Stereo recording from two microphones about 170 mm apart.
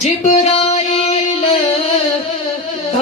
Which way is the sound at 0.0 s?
40° left (ahead or behind).